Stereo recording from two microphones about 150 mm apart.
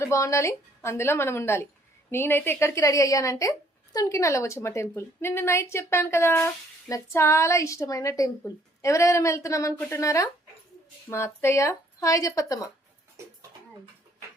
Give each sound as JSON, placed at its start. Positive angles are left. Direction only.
{"t": 0.0, "sound": "a woman's voice", "side_deg": 20}